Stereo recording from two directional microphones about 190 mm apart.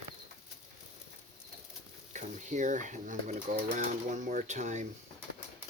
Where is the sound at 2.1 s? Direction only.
40° right (ahead or behind).